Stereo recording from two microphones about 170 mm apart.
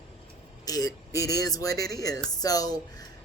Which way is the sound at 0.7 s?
20° left (ahead or behind).